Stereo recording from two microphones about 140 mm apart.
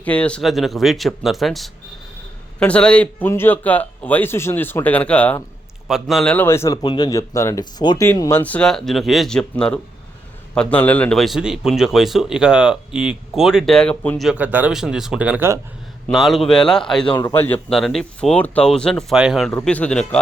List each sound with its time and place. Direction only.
0.0 s a man's voice: 10° left (ahead or behind)
5.9 s a man's voice: centre (ahead or behind)
6.3 s a man's voice: 15° left (ahead or behind)
6.8 s speech: 30° left (ahead or behind)
8.0 s a man's voice: 20° left (ahead or behind)
14.3 s a man's voice: 10° right (ahead or behind); by 17.2 s 5° left (ahead or behind)
17.3 s a man's voice: 15° left (ahead or behind)
17.7 s a man's voice: centre (ahead or behind)
19.5 s a man's voice: 10° left (ahead or behind)